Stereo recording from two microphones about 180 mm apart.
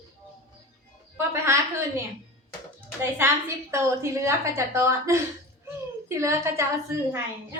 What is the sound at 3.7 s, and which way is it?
A woman's voice, 15° right (ahead or behind).